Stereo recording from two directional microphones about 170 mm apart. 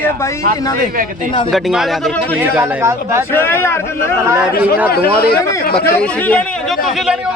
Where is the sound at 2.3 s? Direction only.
10° right (ahead or behind).